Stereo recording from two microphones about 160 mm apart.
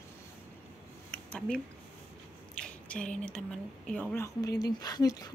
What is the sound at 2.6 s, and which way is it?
Speech, 5° left (ahead or behind).